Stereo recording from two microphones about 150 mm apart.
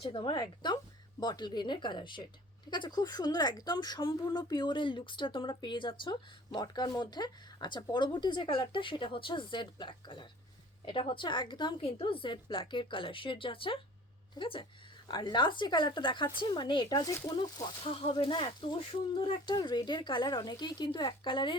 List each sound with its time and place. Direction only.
0.0 s speech: 35° left (ahead or behind)
17.3 s speech: 35° left (ahead or behind)